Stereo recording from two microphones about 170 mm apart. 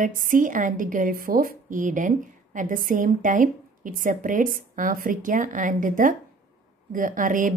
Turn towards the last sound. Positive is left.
turn(degrees=-50)  # may be behind; listen again after turning